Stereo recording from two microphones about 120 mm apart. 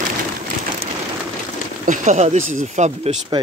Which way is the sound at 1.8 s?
85° right.